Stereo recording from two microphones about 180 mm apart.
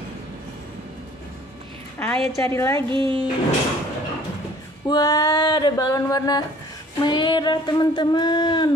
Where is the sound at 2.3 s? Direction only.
15° left (ahead or behind).